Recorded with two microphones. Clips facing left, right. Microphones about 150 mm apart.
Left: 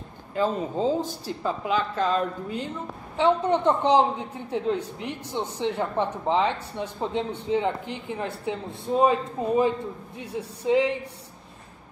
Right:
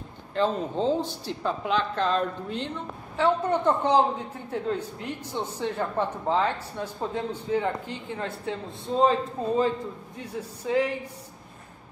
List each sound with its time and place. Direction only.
0.3 s a woman's voice: 5° left (ahead or behind)
3.2 s speech: 20° left (ahead or behind)